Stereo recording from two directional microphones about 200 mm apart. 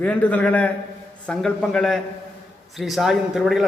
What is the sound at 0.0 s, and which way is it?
Speech, 5° left (ahead or behind).